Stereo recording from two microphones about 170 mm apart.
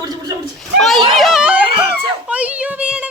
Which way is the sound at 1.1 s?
Centre (ahead or behind).